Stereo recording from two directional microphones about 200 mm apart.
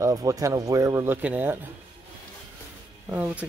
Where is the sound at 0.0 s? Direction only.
15° right (ahead or behind).